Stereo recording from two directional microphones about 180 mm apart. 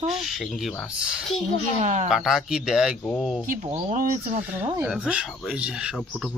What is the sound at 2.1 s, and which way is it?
Speech, 5° right (ahead or behind).